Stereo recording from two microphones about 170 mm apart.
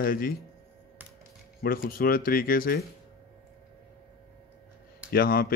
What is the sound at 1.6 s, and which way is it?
Speech, 60° left (ahead or behind).